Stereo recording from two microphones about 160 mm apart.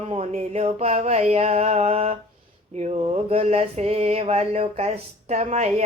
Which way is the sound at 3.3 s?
40° right (ahead or behind).